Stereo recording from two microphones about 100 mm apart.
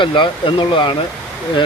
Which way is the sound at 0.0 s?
55° left (ahead or behind).